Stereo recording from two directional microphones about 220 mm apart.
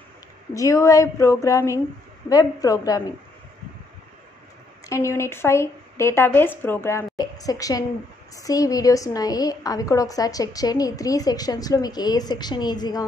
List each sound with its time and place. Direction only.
0.6 s a woman's voice: 15° left (ahead or behind)
4.8 s a woman's voice: 15° left (ahead or behind)